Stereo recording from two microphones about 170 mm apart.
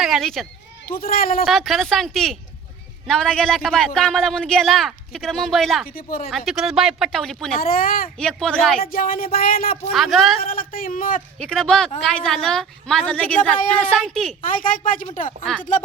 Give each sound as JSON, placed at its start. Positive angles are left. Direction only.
{"t": 0.0, "sound": "speech", "side_deg": 0}
{"t": 0.9, "sound": "speech", "side_deg": 60}
{"t": 1.5, "sound": "a man's voice", "side_deg": 0}
{"t": 5.9, "sound": "speech", "side_deg": 55}
{"t": 6.3, "sound": "a man's voice", "side_deg": 0}
{"t": 7.6, "sound": "speech", "side_deg": 55}
{"t": 8.2, "sound": "a man's voice", "side_deg": 5}
{"t": 8.8, "sound": "speech", "side_deg": 55}
{"t": 9.9, "sound": "a man's voice", "side_deg": 0}
{"t": 10.4, "sound": "speech", "side_deg": 55}
{"t": 11.3, "sound": "a man's voice", "side_deg": 5}
{"t": 14.4, "sound": "speech", "side_deg": 55}